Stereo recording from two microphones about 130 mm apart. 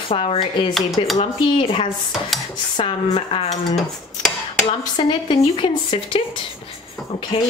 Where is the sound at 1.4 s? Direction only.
40° left (ahead or behind).